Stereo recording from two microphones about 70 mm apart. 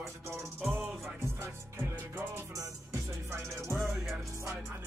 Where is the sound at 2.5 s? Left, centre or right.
Right.